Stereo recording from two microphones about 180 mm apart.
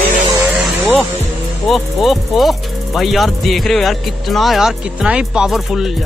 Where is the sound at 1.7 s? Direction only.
Centre (ahead or behind).